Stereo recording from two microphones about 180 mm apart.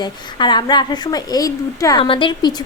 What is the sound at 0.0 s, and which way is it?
A woman's voice, 25° left (ahead or behind).